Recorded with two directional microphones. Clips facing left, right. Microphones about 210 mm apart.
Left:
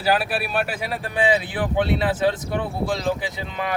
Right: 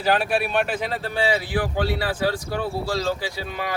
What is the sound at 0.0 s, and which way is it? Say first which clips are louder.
Speech: right 1 dB; 5° left (ahead or behind).